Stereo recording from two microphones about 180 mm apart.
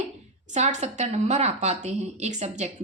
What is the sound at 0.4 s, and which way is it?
A woman's voice, 40° right (ahead or behind).